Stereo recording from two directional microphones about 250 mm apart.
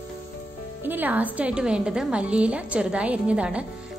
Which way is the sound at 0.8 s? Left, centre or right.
Centre.